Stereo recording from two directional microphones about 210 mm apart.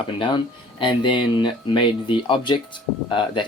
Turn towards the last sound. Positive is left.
turn(degrees=20)  # may be behind; listen again after turning